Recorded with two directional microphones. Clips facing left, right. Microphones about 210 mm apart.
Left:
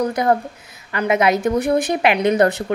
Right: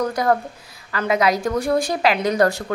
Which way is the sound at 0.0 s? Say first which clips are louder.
Left 2 dB; 20° left (ahead or behind).